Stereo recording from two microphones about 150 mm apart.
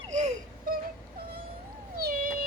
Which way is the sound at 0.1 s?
55° right (ahead or behind).